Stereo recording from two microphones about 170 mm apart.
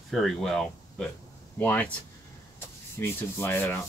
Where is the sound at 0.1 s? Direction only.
Centre (ahead or behind).